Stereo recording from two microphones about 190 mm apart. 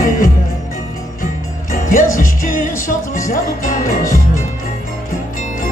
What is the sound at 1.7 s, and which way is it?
Music, 45° left (ahead or behind).